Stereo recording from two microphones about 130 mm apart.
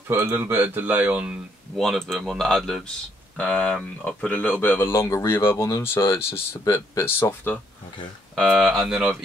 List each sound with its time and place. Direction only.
0.1 s speech: 15° right (ahead or behind)
1.8 s speech: 5° left (ahead or behind)
8.4 s speech: centre (ahead or behind)